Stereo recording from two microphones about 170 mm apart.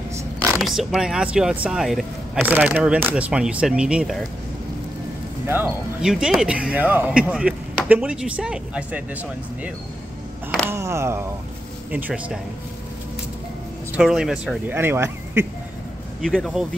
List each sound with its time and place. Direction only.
0.1 s a sound: 15° right (ahead or behind)
0.6 s speech: centre (ahead or behind)
5.5 s speech: 10° right (ahead or behind)
10.7 s speech: 15° right (ahead or behind)
13.9 s speech: 5° right (ahead or behind)
16.2 s speech: centre (ahead or behind)